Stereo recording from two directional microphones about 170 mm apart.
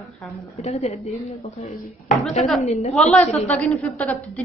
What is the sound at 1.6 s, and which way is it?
A woman's voice, 50° left (ahead or behind).